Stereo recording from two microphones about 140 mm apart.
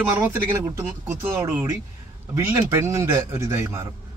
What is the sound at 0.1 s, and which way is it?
A man's voice, 20° right (ahead or behind).